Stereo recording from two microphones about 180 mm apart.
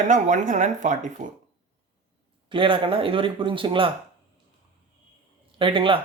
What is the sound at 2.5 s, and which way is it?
A man's voice, 30° right (ahead or behind).